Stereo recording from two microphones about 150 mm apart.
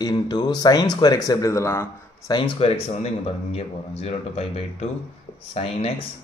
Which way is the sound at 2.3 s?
35° left (ahead or behind).